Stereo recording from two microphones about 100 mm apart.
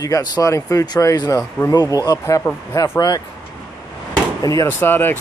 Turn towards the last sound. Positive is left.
turn(degrees=20)  # may be behind; listen again after turning